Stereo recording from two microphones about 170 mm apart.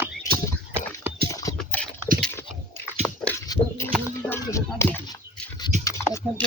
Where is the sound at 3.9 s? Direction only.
15° left (ahead or behind).